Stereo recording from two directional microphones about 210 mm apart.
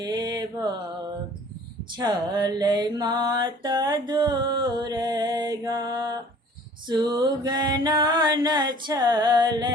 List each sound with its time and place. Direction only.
0.0 s mantra: 20° right (ahead or behind)
2.0 s music: 20° right (ahead or behind)